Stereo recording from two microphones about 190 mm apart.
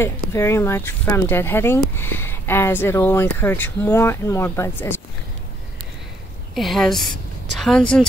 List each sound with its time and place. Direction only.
0.0 s speech: 15° left (ahead or behind)
6.5 s a woman's voice: centre (ahead or behind)